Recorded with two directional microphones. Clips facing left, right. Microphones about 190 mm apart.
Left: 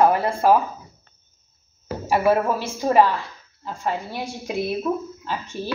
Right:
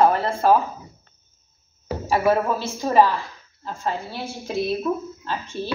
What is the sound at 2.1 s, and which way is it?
A woman's voice, 10° left (ahead or behind).